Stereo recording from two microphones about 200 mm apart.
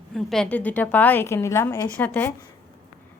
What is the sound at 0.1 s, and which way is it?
A woman's voice, centre (ahead or behind).